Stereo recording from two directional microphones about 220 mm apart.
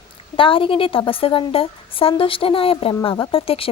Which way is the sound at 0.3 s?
25° left (ahead or behind).